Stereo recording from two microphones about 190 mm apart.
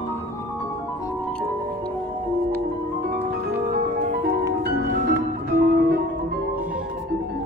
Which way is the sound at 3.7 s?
55° right (ahead or behind).